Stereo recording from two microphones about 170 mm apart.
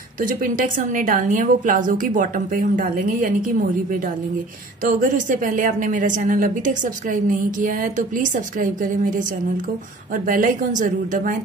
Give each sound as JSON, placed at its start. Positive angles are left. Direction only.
{"t": 0.2, "sound": "a woman's voice", "side_deg": -55}
{"t": 4.8, "sound": "a woman's voice", "side_deg": -50}